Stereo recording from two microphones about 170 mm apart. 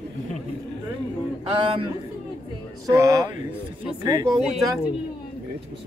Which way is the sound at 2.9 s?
20° right (ahead or behind).